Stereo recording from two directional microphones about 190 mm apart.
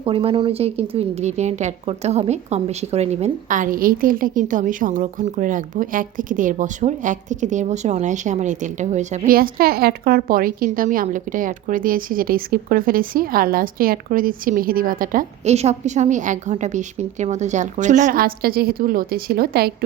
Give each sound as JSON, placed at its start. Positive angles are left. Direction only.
{"t": 0.0, "sound": "speech", "side_deg": -30}